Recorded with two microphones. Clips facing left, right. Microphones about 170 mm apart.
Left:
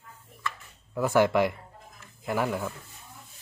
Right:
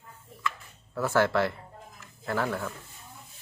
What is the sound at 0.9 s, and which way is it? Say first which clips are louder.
Speech: left 2 dB; 15° left (ahead or behind).